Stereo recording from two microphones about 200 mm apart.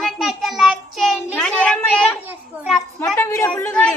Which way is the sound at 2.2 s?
10° right (ahead or behind).